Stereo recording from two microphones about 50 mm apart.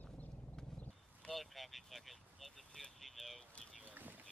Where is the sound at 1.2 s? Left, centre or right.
Centre.